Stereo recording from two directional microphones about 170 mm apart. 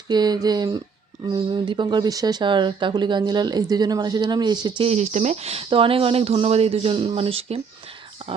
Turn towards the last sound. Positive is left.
turn(degrees=-35)  # may be behind; listen again after turning